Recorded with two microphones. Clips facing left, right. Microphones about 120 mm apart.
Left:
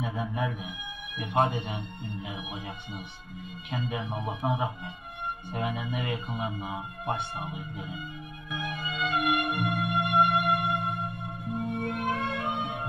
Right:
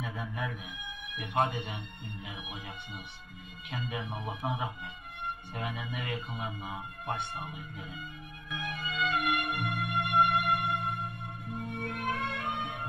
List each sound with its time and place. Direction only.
0.0 s music: 15° left (ahead or behind)
1.2 s speech: 25° left (ahead or behind)
4.1 s music: 35° left (ahead or behind)
5.5 s speech: 10° left (ahead or behind)
8.5 s music: 15° left (ahead or behind)
9.1 s music: 10° left (ahead or behind)
12.1 s music: 5° left (ahead or behind)